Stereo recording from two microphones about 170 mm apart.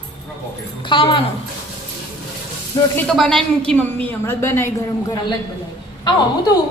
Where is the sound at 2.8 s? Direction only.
20° left (ahead or behind).